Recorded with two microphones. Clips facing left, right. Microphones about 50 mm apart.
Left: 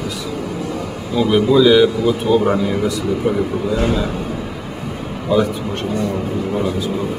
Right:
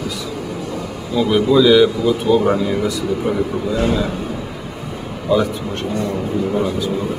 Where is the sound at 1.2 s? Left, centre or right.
Centre.